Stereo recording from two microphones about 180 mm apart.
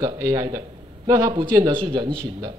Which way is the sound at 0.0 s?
20° right (ahead or behind).